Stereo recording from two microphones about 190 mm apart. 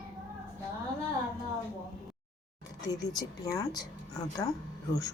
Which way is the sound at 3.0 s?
20° left (ahead or behind).